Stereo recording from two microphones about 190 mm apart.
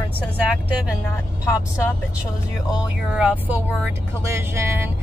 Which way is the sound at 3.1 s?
5° right (ahead or behind).